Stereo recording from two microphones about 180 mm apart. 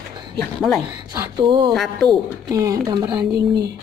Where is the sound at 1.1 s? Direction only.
20° right (ahead or behind).